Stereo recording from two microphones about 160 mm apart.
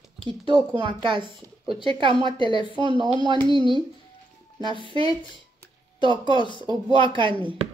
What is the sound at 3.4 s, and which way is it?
Speech, 30° left (ahead or behind).